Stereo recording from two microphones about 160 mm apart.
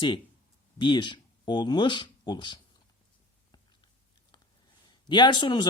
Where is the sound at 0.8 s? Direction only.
30° left (ahead or behind).